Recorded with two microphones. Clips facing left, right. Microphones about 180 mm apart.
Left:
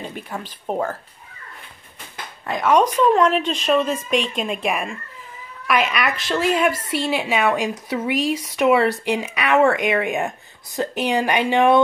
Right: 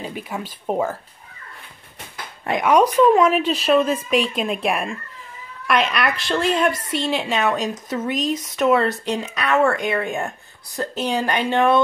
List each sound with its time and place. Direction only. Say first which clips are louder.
0.0 s speech: right 2 dB; 10° right (ahead or behind)
2.4 s speech: right 2 dB; 20° right (ahead or behind)
2.7 s a woman's voice: right 2 dB; 10° right (ahead or behind); by 11.8 s 15° left (ahead or behind)